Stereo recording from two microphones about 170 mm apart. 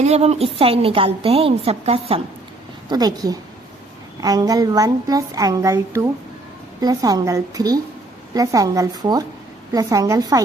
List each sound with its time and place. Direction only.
0.0 s a woman's voice: 40° right (ahead or behind)
2.9 s a woman's voice: 20° right (ahead or behind)